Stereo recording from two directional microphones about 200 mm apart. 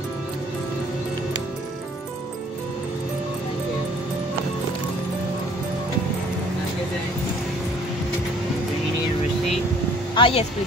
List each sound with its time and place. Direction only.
10.1 s speech: 25° left (ahead or behind)